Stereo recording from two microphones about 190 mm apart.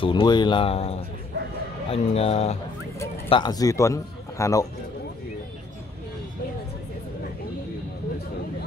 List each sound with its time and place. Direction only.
0.0 s a man's voice: 25° left (ahead or behind)